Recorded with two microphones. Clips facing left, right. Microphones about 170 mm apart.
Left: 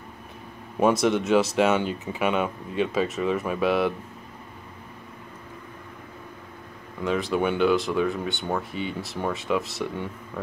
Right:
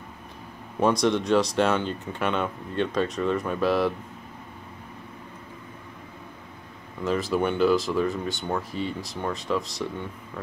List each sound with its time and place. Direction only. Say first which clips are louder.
0.7 s speech: left 1 dB; 5° left (ahead or behind)
7.0 s speech: even; centre (ahead or behind)